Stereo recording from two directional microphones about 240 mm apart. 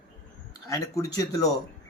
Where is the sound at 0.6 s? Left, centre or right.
Centre.